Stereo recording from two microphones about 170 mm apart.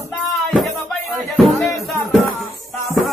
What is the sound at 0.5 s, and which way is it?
Music, centre (ahead or behind).